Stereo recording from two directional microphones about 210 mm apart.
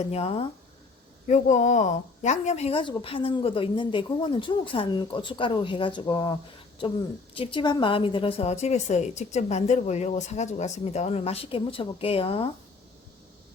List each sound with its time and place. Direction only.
0.0 s a woman's voice: 30° left (ahead or behind)
7.3 s a woman's voice: 25° left (ahead or behind)